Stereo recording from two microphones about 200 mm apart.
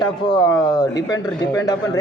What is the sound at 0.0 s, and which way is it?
A man's voice, 20° left (ahead or behind).